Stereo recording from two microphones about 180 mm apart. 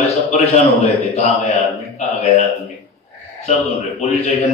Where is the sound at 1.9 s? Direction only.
35° left (ahead or behind).